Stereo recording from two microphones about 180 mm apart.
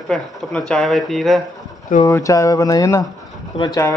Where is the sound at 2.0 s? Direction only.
20° left (ahead or behind).